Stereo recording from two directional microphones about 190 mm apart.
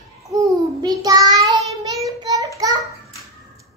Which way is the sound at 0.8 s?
20° right (ahead or behind).